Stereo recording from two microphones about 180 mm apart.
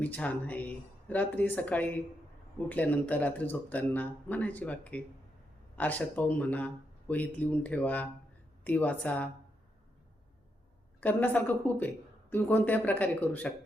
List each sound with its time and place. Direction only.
0.0 s speech: 10° left (ahead or behind)
11.0 s speech: 10° left (ahead or behind)